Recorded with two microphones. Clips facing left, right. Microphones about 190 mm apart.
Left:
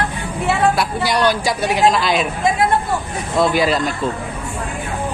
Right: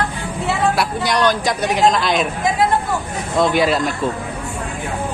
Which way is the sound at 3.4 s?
Centre (ahead or behind).